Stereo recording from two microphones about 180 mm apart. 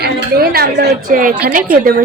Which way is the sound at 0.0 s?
60° right (ahead or behind).